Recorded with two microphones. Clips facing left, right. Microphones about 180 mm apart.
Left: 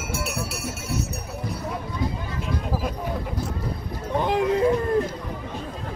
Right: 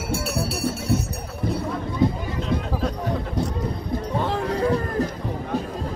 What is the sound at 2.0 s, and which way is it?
Run, 25° right (ahead or behind).